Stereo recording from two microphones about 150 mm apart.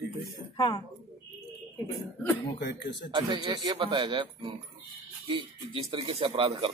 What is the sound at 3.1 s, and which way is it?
A man's voice, 30° right (ahead or behind).